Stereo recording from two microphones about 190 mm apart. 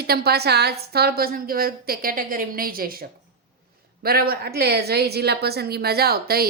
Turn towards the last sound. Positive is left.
turn(degrees=-55)  # may be behind; listen again after turning